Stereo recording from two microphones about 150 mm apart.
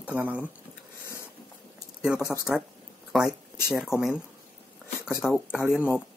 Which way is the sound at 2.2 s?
15° left (ahead or behind).